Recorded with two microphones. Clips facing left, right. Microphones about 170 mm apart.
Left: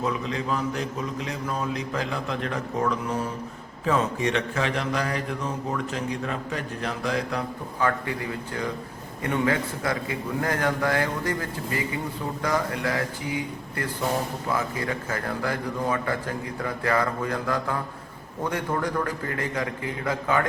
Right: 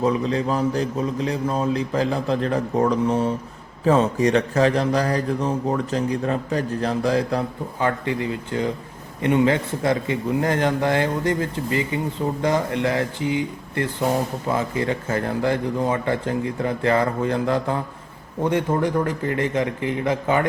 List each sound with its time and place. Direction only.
0.0 s a man's voice: 35° right (ahead or behind)